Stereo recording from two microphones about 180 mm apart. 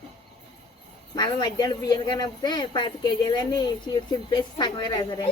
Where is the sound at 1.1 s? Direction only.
20° left (ahead or behind).